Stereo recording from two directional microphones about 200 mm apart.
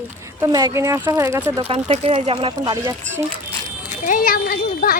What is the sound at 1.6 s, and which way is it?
Speech, 30° right (ahead or behind).